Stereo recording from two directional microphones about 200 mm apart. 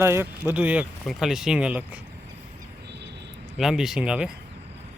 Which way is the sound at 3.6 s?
Centre (ahead or behind).